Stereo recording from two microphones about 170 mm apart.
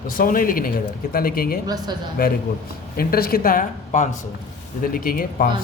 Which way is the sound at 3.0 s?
60° left (ahead or behind).